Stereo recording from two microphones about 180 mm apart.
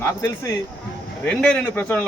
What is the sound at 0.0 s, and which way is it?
Speech, 15° left (ahead or behind).